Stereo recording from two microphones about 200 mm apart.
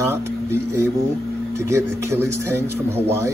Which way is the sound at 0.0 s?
15° right (ahead or behind).